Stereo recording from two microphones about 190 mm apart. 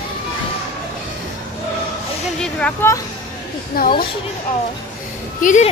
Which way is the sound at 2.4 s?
10° left (ahead or behind).